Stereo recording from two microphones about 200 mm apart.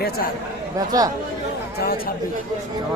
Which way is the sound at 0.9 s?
20° right (ahead or behind).